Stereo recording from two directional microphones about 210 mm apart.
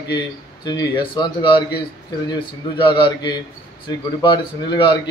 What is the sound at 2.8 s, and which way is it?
Speech, 20° left (ahead or behind).